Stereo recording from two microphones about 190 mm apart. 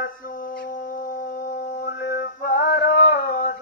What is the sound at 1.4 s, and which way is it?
Mantra, 55° left (ahead or behind).